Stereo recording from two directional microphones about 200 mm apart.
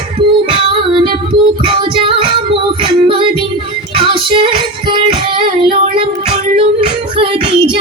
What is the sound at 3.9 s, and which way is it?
Child singing, 25° right (ahead or behind).